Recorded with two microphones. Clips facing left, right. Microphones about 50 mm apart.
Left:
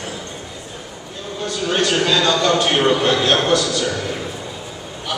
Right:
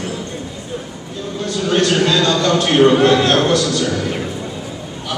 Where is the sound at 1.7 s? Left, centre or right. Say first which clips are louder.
Right 3 dB; centre.